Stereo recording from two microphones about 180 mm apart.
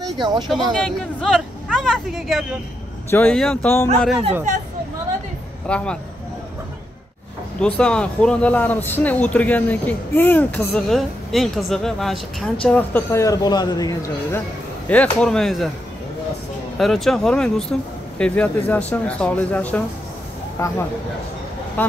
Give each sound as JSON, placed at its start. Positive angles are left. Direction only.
{"t": 0.0, "sound": "speech", "side_deg": -25}
{"t": 0.5, "sound": "speech", "side_deg": 0}
{"t": 5.7, "sound": "a man's voice", "side_deg": 5}
{"t": 7.6, "sound": "a man's voice", "side_deg": 5}
{"t": 14.9, "sound": "speech", "side_deg": 5}
{"t": 16.7, "sound": "a man's voice", "side_deg": 0}
{"t": 21.8, "sound": "speech", "side_deg": 10}